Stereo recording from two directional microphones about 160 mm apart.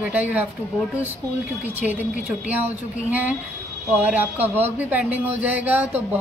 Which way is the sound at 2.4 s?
10° right (ahead or behind).